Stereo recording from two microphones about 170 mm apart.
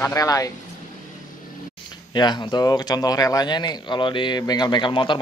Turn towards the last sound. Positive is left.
turn(degrees=30)  # may be behind; listen again after turning